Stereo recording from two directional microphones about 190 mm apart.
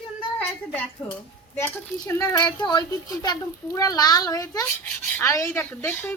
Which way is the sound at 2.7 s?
20° left (ahead or behind).